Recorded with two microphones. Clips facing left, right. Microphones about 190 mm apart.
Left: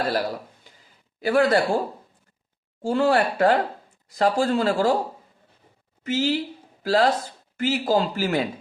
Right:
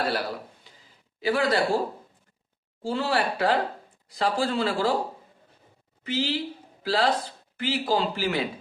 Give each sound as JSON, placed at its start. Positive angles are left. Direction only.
{"t": 1.2, "sound": "speech", "side_deg": 50}
{"t": 2.8, "sound": "speech", "side_deg": 50}
{"t": 6.0, "sound": "speech", "side_deg": 45}